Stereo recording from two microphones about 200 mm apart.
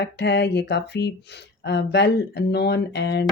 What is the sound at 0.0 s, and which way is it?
Speech, 60° left (ahead or behind).